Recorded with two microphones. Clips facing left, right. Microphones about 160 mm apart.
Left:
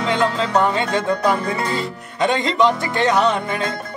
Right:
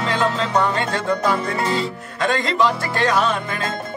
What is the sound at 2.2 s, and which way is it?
Speech, 20° left (ahead or behind).